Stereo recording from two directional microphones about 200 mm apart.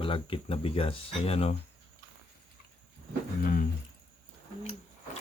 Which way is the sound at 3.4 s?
45° left (ahead or behind).